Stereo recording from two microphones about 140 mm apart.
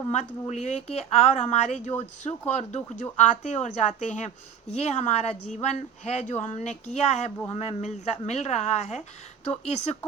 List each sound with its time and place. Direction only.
0.1 s speech: 55° left (ahead or behind)